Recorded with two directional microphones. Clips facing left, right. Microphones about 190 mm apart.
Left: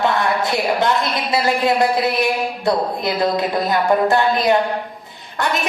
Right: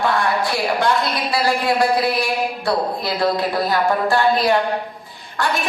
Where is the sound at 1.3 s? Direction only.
20° left (ahead or behind).